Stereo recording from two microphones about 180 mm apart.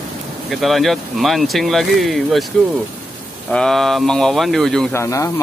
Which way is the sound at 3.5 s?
5° left (ahead or behind).